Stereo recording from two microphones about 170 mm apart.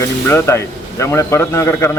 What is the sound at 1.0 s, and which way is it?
Speech, 15° left (ahead or behind).